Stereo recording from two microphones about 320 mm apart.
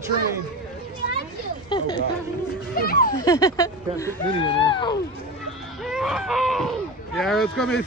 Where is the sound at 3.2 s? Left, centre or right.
Centre.